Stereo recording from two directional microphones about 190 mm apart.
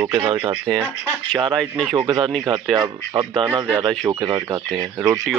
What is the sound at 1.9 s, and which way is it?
Speech, 20° right (ahead or behind).